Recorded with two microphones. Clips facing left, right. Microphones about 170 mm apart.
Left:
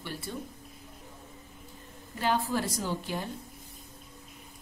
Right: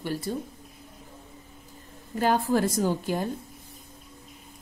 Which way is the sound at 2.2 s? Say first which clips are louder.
Right 6 dB; 45° right (ahead or behind).